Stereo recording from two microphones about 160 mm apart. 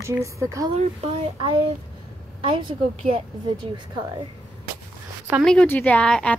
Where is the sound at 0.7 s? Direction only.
40° right (ahead or behind).